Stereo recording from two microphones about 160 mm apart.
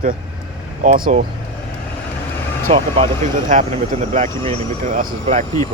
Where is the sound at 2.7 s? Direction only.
35° right (ahead or behind).